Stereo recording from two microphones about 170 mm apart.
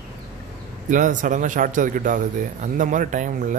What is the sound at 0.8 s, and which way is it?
Speech, 50° right (ahead or behind).